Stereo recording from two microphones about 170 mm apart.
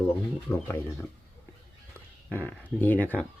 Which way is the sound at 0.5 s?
10° left (ahead or behind).